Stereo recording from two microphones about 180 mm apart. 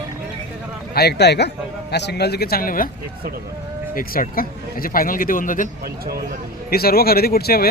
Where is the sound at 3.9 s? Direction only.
50° left (ahead or behind).